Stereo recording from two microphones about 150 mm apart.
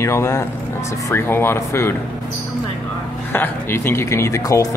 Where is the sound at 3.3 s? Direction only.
15° left (ahead or behind).